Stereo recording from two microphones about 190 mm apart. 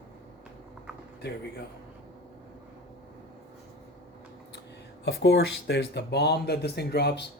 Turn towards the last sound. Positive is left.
turn(degrees=60)  # may be behind; listen again after turning